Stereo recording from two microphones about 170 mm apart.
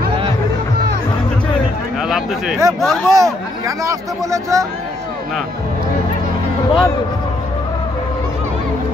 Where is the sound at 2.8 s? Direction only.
Centre (ahead or behind).